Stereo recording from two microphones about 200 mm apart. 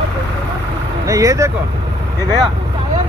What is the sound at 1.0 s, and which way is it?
Speech, 15° right (ahead or behind).